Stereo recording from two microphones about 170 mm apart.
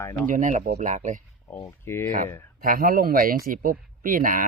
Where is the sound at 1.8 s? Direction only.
15° left (ahead or behind).